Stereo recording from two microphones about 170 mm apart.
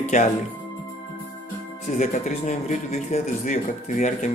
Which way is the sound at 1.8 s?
45° left (ahead or behind).